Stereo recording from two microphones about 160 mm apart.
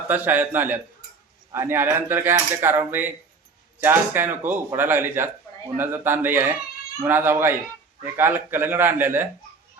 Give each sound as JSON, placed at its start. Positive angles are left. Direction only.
{"t": 0.1, "sound": "speech", "side_deg": -10}